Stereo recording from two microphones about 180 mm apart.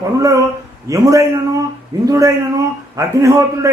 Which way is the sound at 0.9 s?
20° right (ahead or behind).